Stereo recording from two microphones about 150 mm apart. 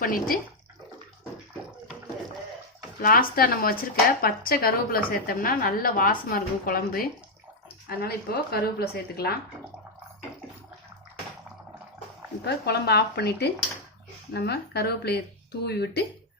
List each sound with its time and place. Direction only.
0.0 s a woman's voice: 70° left (ahead or behind)
3.0 s a woman's voice: 75° left (ahead or behind)
7.9 s a woman's voice: 90° left
12.5 s a woman's voice: 90° left